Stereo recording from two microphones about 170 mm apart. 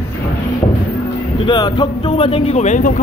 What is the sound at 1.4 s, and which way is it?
Speech, 25° left (ahead or behind).